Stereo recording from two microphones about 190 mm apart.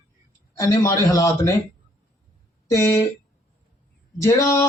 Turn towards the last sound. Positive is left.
turn(degrees=15)  # may be behind; listen again after turning